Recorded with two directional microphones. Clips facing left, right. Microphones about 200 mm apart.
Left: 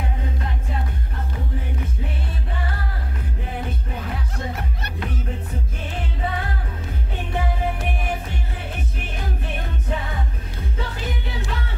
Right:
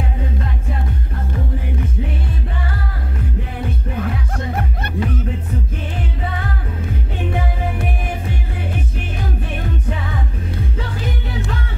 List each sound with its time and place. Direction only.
4.0 s music: 55° right (ahead or behind)